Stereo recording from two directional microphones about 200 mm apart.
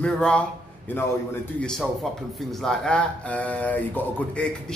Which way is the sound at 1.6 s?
Centre (ahead or behind).